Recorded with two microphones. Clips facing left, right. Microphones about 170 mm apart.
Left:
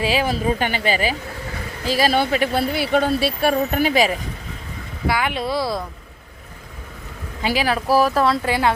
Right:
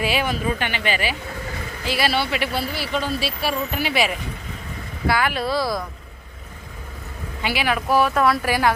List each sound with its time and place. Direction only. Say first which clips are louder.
0.0 s a woman's voice: left 2 dB; 35° left (ahead or behind)
5.0 s speech: even; 15° left (ahead or behind)
7.4 s a woman's voice: left 3 dB; 35° left (ahead or behind)